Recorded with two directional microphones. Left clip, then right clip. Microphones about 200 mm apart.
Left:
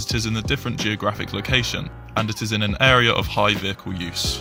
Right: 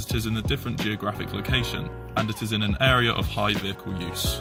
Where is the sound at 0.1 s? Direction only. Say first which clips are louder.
Left 4 dB; 45° left (ahead or behind).